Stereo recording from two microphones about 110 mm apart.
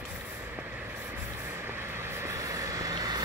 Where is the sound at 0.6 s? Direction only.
15° right (ahead or behind).